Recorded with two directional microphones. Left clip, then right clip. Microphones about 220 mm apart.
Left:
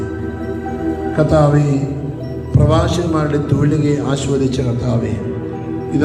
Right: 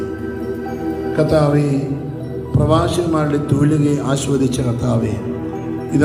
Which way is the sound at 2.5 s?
20° right (ahead or behind).